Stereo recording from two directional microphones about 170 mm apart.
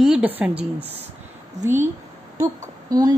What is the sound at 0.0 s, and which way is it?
Speech, 5° right (ahead or behind).